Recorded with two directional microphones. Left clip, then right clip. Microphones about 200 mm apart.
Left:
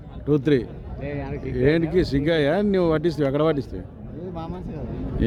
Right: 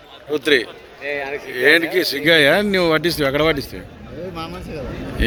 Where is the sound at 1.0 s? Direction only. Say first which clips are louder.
Right 8 dB; 50° right (ahead or behind).